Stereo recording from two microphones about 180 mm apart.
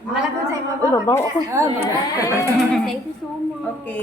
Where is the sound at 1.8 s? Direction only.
15° left (ahead or behind).